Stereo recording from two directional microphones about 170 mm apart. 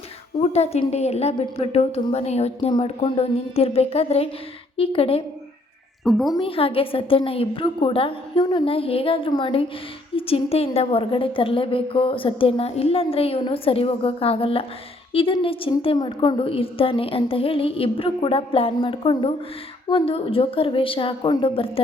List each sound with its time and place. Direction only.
0.4 s a woman's voice: 40° left (ahead or behind)
6.1 s a woman's voice: centre (ahead or behind)
6.3 s a woman's voice: 35° left (ahead or behind)